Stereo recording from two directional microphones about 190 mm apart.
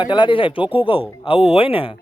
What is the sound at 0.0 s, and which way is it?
Speech, 25° left (ahead or behind).